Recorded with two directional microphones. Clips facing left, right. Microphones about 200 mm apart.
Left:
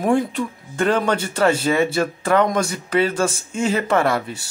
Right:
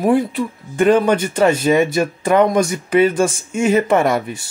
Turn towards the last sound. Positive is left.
turn(degrees=-15)  # may be behind; listen again after turning